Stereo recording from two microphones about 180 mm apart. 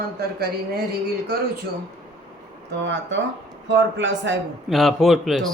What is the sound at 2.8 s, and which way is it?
A man's voice, 80° right.